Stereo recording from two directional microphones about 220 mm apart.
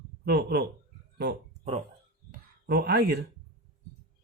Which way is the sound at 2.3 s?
45° right (ahead or behind).